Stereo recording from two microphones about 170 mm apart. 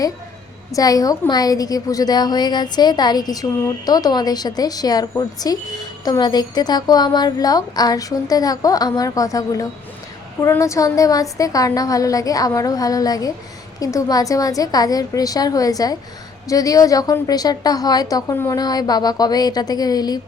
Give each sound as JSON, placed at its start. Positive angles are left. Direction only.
{"t": 0.7, "sound": "a woman's voice", "side_deg": 20}